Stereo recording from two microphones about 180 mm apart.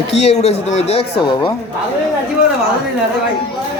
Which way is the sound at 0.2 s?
35° left (ahead or behind).